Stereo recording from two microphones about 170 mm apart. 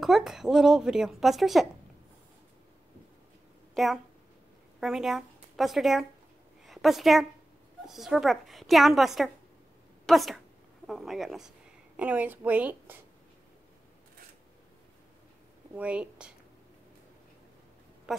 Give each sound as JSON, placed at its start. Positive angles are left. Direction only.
{"t": 0.0, "sound": "a woman's voice", "side_deg": 0}
{"t": 3.7, "sound": "a woman's voice", "side_deg": 0}
{"t": 15.7, "sound": "a woman's voice", "side_deg": -5}